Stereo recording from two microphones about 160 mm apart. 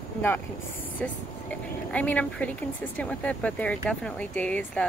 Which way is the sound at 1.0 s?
10° left (ahead or behind).